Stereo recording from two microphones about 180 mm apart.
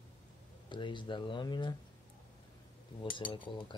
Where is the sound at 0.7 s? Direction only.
25° left (ahead or behind).